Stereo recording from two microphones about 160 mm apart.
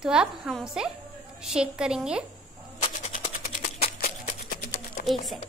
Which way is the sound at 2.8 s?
45° left (ahead or behind).